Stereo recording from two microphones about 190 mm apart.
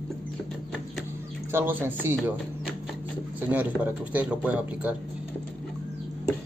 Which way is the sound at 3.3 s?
10° right (ahead or behind).